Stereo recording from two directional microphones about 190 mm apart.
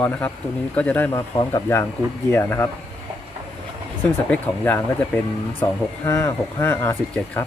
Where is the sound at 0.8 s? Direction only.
10° left (ahead or behind).